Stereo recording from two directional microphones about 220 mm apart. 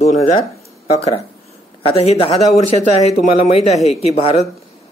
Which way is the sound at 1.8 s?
25° left (ahead or behind).